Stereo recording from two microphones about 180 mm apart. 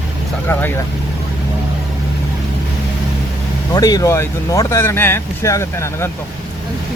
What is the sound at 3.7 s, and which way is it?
Speech, 20° left (ahead or behind).